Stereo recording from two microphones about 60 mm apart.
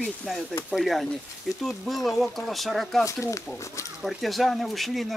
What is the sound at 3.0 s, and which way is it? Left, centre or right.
Speech, left.